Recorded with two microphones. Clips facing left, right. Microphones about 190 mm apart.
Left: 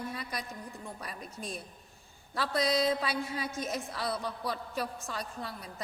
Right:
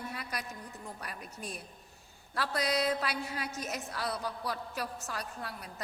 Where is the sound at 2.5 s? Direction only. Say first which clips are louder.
Left 3 dB; 30° left (ahead or behind).